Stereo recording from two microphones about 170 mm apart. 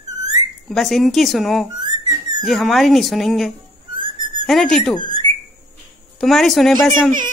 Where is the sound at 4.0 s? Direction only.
30° right (ahead or behind).